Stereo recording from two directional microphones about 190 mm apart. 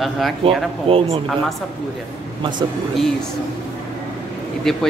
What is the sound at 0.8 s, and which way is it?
Speech, 30° right (ahead or behind).